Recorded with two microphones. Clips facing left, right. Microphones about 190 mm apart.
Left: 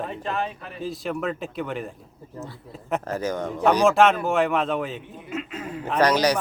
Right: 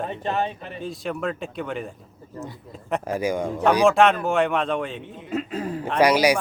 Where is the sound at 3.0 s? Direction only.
10° right (ahead or behind).